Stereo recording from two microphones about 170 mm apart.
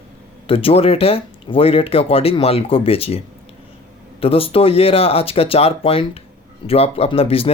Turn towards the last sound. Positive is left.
turn(degrees=35)  # may be behind; listen again after turning